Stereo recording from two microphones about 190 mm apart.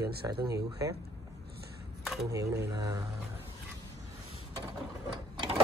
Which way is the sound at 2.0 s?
Centre (ahead or behind).